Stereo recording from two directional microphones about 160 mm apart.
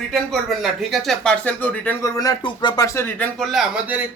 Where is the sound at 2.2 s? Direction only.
25° left (ahead or behind).